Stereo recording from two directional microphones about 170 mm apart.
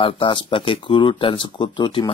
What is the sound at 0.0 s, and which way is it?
Speech, 30° left (ahead or behind).